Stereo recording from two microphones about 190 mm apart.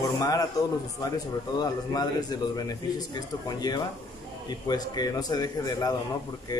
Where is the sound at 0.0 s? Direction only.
20° left (ahead or behind).